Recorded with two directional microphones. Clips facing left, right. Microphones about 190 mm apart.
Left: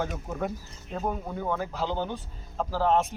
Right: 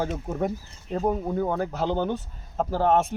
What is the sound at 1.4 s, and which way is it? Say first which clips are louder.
Speech: right 4 dB; 45° right (ahead or behind).